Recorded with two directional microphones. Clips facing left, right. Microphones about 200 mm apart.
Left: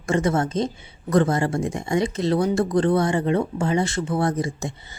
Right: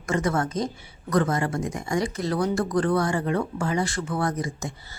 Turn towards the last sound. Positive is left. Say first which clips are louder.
# left 4 dB
turn(degrees=25)  # may be behind; listen again after turning